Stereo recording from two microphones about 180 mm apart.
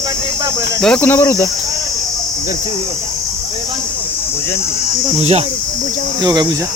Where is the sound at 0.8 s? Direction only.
5° left (ahead or behind).